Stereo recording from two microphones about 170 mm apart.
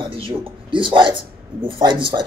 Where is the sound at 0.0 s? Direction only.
30° right (ahead or behind).